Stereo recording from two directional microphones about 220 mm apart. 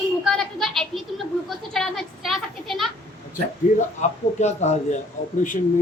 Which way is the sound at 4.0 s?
30° left (ahead or behind).